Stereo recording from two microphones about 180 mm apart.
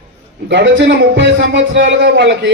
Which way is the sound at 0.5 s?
80° right.